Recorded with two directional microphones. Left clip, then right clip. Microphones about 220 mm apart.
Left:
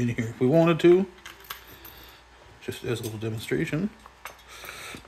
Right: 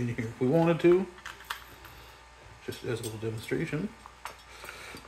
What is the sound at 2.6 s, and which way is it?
Speech, 50° left (ahead or behind).